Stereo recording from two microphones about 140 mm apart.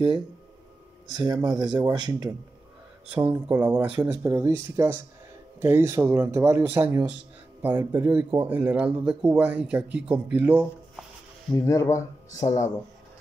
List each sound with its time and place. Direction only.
1.1 s speech: 30° right (ahead or behind); by 4.2 s 10° right (ahead or behind)
4.2 s speech: 20° right (ahead or behind)
11.6 s speech: 20° left (ahead or behind)